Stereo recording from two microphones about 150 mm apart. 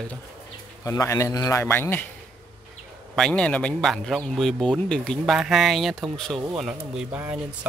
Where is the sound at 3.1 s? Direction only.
5° left (ahead or behind).